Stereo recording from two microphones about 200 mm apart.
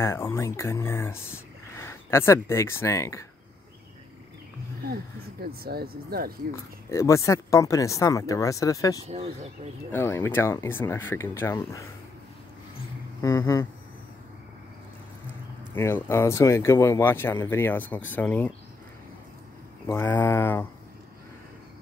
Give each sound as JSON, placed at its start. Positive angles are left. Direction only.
{"t": 0.0, "sound": "speech", "side_deg": 10}
{"t": 4.8, "sound": "speech", "side_deg": -50}
{"t": 6.5, "sound": "speech", "side_deg": 15}
{"t": 9.0, "sound": "speech", "side_deg": -30}
{"t": 9.9, "sound": "speech", "side_deg": 10}
{"t": 13.2, "sound": "speech", "side_deg": 15}
{"t": 15.7, "sound": "speech", "side_deg": 10}
{"t": 19.9, "sound": "speech", "side_deg": 10}